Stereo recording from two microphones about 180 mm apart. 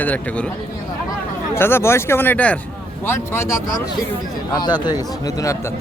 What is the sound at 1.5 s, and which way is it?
Speech, 15° left (ahead or behind).